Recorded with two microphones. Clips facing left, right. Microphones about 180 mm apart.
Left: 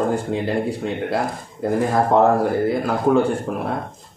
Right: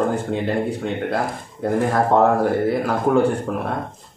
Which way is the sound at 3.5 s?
15° left (ahead or behind).